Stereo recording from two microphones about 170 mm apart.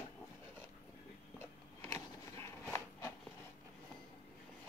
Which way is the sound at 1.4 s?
15° left (ahead or behind).